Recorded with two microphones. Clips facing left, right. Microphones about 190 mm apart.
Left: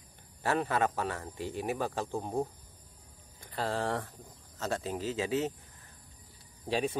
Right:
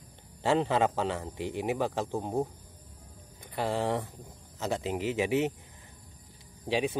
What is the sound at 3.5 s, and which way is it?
A man's voice, 15° right (ahead or behind).